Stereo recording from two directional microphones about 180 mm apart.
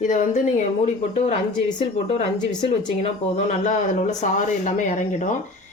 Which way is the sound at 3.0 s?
40° left (ahead or behind).